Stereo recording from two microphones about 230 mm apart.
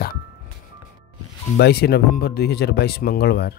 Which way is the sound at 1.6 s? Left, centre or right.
Left.